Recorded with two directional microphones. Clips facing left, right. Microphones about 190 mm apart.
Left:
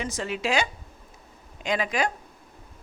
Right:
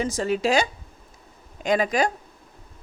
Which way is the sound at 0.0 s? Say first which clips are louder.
Right 6 dB; 40° right (ahead or behind).